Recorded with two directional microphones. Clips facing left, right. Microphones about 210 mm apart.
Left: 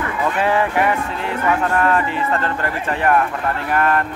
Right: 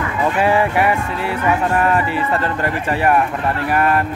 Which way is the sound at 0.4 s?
10° right (ahead or behind).